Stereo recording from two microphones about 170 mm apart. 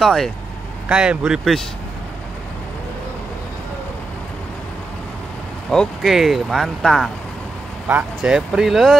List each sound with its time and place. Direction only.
0.0 s speech: centre (ahead or behind)
5.7 s speech: centre (ahead or behind)